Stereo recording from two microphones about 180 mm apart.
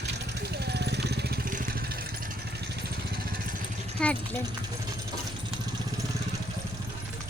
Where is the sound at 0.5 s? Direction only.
65° right (ahead or behind).